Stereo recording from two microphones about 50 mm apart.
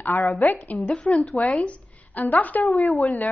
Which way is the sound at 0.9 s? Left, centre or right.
Centre.